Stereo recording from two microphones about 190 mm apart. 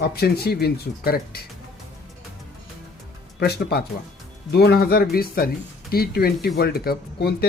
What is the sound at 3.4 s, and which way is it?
Speech, 55° left (ahead or behind).